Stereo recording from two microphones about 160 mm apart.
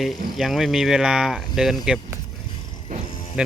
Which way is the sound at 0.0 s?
Centre (ahead or behind).